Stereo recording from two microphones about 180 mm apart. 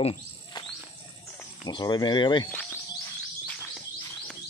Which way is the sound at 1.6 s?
25° left (ahead or behind).